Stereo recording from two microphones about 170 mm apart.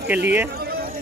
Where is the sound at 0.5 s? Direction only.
65° right (ahead or behind).